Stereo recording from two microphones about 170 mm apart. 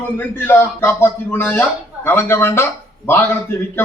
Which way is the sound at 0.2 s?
10° left (ahead or behind).